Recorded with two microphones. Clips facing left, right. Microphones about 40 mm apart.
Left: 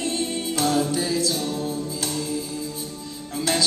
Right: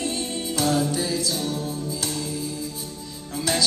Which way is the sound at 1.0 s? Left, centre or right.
Centre.